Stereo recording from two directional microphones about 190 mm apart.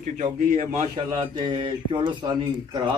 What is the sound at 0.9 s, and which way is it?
Speech, 25° right (ahead or behind).